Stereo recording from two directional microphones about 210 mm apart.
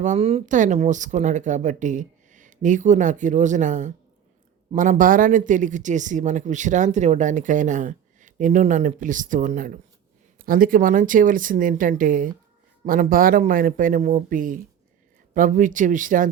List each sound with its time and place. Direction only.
0.0 s speech: 35° right (ahead or behind)